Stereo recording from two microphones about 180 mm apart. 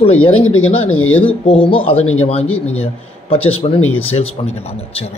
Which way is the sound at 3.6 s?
35° left (ahead or behind).